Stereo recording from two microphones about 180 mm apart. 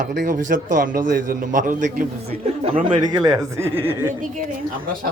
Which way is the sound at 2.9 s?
25° right (ahead or behind).